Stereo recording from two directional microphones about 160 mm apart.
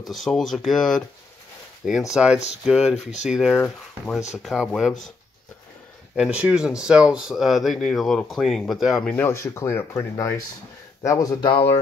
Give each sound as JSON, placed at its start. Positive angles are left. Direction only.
{"t": 0.1, "sound": "speech", "side_deg": 0}
{"t": 6.1, "sound": "speech", "side_deg": -5}
{"t": 9.1, "sound": "speech", "side_deg": 15}
{"t": 11.5, "sound": "speech", "side_deg": 40}